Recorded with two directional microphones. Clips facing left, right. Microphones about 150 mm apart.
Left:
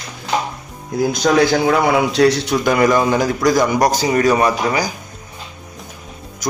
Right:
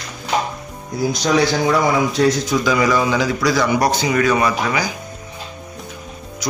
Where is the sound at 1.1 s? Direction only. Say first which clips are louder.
Left 3 dB; 50° left (ahead or behind).